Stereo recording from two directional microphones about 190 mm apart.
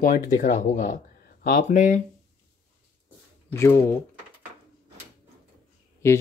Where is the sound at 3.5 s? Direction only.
15° left (ahead or behind).